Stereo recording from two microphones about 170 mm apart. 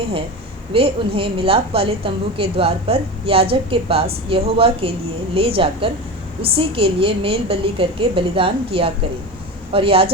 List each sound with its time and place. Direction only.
0.7 s a woman's voice: 35° right (ahead or behind)